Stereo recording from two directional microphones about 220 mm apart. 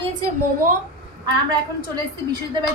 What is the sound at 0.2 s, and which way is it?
Speech, 40° right (ahead or behind).